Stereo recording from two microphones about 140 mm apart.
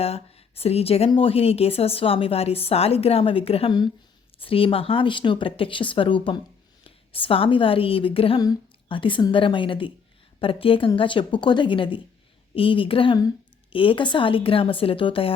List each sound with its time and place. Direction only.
0.0 s a woman's voice: 45° left (ahead or behind)